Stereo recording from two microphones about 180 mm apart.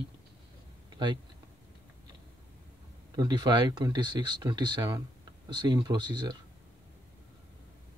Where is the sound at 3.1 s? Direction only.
20° right (ahead or behind).